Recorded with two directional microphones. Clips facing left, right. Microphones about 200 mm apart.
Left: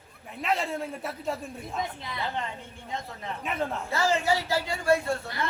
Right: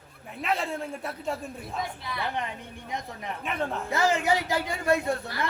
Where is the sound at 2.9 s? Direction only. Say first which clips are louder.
Right 1 dB; 15° right (ahead or behind).